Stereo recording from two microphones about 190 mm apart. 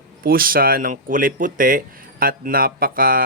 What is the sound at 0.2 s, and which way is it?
Speech, 50° right (ahead or behind).